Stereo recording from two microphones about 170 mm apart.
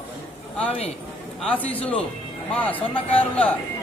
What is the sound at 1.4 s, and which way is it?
Speech, 10° left (ahead or behind).